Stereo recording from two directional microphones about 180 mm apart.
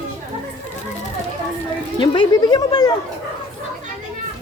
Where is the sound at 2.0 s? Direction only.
25° left (ahead or behind).